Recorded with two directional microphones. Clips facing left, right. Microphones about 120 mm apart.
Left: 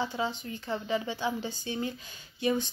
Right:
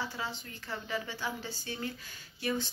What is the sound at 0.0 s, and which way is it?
A woman's voice, 20° left (ahead or behind).